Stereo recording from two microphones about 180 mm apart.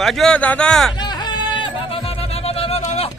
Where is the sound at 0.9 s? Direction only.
25° left (ahead or behind).